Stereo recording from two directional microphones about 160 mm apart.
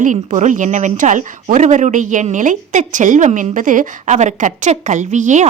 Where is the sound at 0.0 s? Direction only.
50° right (ahead or behind).